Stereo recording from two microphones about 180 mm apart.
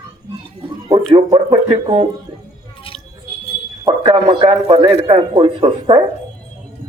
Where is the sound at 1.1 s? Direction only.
30° right (ahead or behind).